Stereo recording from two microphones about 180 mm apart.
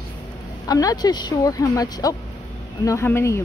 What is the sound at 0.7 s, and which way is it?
Speech, 20° left (ahead or behind).